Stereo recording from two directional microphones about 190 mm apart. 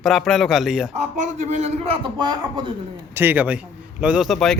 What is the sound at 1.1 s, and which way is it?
A man's voice, 35° right (ahead or behind).